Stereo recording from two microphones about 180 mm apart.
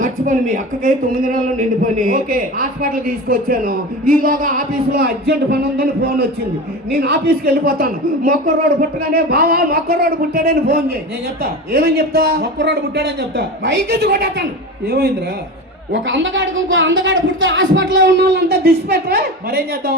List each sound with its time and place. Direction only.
0.0 s speech: 45° right (ahead or behind)
15.9 s a woman's voice: 90° right; by 20.0 s 60° right (ahead or behind)